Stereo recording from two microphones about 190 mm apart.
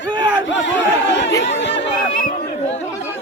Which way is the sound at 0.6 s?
70° left (ahead or behind).